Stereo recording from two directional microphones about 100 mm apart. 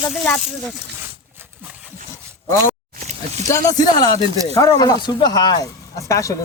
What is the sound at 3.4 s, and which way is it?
Speech, 35° left (ahead or behind).